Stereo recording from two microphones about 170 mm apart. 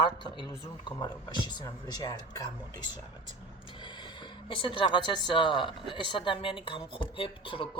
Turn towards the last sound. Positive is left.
turn(degrees=30)  # may be behind; listen again after turning